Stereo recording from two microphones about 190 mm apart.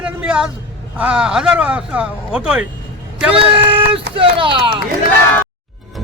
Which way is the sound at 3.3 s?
30° right (ahead or behind).